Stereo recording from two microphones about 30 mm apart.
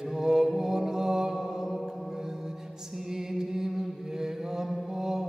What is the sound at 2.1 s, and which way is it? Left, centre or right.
Music, centre.